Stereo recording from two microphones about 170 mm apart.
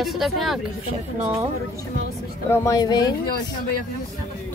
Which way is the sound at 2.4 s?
15° left (ahead or behind).